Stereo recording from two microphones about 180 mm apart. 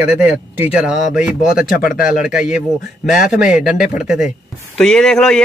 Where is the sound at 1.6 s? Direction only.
55° left (ahead or behind).